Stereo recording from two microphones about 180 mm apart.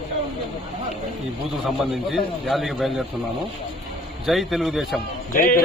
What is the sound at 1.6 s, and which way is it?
A man's voice, centre (ahead or behind).